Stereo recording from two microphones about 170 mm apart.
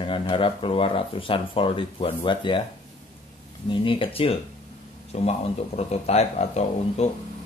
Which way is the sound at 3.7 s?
30° left (ahead or behind).